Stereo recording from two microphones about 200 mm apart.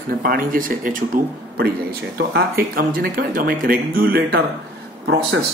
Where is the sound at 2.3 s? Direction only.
50° right (ahead or behind).